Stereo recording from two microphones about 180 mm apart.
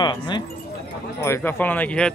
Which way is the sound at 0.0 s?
25° left (ahead or behind).